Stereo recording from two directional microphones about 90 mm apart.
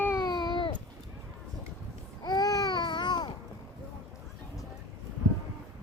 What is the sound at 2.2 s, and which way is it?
Babbling, 45° left (ahead or behind).